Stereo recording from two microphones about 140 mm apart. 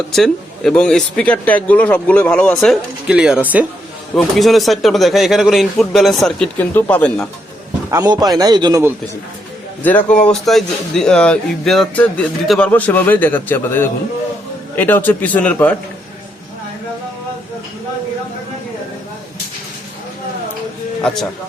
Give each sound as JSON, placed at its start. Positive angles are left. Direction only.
{"t": 0.1, "sound": "speech", "side_deg": 5}
{"t": 3.1, "sound": "speech", "side_deg": -5}
{"t": 4.1, "sound": "a man's voice", "side_deg": 5}
{"t": 7.9, "sound": "a man's voice", "side_deg": -25}
{"t": 9.8, "sound": "speech", "side_deg": 10}